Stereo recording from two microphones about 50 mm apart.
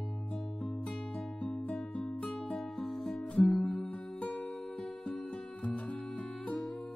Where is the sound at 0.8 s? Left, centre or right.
Left.